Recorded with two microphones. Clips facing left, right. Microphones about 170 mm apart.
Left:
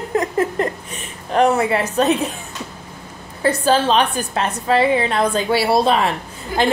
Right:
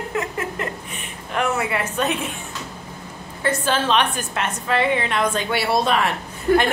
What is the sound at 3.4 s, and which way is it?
A woman's voice, 35° left (ahead or behind).